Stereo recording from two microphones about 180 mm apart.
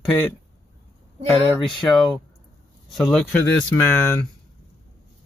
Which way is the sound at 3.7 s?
15° left (ahead or behind).